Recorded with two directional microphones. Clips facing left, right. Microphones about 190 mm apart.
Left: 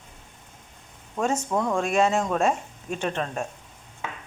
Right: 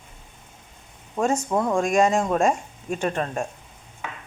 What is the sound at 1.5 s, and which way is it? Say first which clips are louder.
Speech: right 2 dB; 20° right (ahead or behind).